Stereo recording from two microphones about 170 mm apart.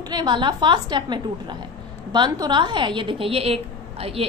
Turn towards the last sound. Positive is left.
turn(degrees=-35)  # may be behind; listen again after turning